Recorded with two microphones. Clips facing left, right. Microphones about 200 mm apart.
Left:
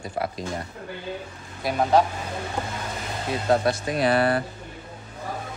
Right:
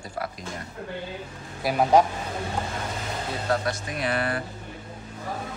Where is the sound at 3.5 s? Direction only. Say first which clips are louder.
Left 6 dB; 30° left (ahead or behind).